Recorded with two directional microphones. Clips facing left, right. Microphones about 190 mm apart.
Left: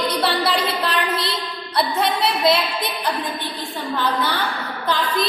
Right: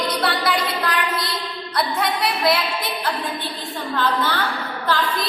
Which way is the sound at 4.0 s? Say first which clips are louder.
Right 1 dB; 15° left (ahead or behind).